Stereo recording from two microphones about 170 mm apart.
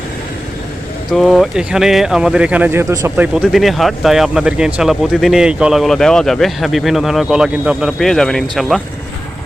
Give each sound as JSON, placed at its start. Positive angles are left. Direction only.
{"t": 1.1, "sound": "speech", "side_deg": 0}
{"t": 3.3, "sound": "speech", "side_deg": 0}